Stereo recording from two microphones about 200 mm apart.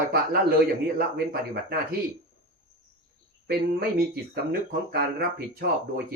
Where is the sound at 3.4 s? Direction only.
50° right (ahead or behind).